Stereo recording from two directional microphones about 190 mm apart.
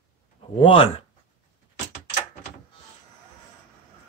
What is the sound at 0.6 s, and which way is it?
Speech, 30° left (ahead or behind).